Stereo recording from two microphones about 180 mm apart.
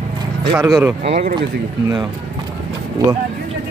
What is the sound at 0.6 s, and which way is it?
Speech, 15° right (ahead or behind).